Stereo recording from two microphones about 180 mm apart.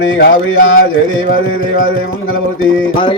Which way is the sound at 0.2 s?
65° left (ahead or behind).